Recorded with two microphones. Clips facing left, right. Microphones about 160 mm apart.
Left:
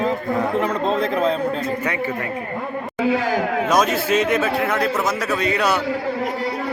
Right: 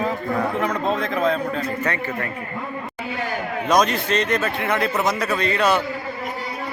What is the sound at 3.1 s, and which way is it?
Speech, 90° left.